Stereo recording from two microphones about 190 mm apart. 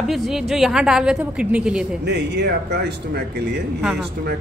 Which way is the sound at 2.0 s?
65° right (ahead or behind).